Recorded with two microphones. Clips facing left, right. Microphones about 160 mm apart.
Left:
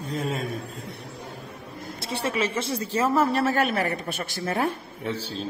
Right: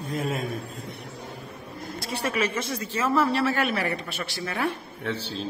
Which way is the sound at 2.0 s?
25° left (ahead or behind).